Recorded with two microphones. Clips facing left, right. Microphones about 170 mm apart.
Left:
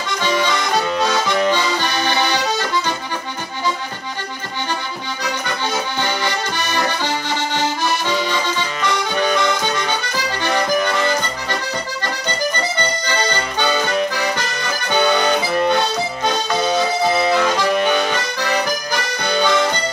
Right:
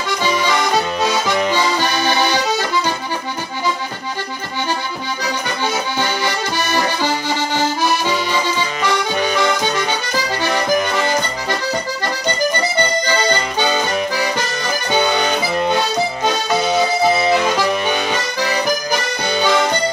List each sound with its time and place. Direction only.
1.0 s accordion: 5° right (ahead or behind)
5.9 s accordion: 10° right (ahead or behind)
13.1 s accordion: 10° right (ahead or behind)
15.5 s accordion: 15° right (ahead or behind)